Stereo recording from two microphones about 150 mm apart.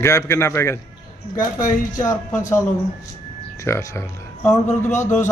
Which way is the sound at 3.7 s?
15° left (ahead or behind).